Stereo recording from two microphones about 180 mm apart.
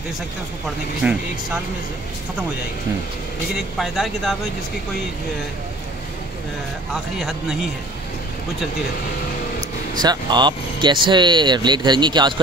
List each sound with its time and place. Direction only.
1.0 s speech: 5° right (ahead or behind)
3.5 s speech: centre (ahead or behind)
6.9 s speech: centre (ahead or behind)
9.9 s speech: 25° right (ahead or behind)